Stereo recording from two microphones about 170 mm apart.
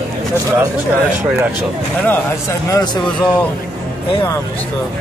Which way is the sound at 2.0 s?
15° left (ahead or behind).